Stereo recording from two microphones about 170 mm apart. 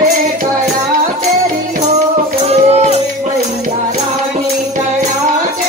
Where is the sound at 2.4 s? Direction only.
40° right (ahead or behind).